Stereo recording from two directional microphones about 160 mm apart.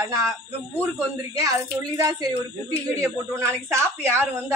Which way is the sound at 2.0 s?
20° right (ahead or behind).